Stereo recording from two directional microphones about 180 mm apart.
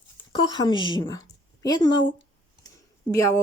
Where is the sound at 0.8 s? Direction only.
25° left (ahead or behind).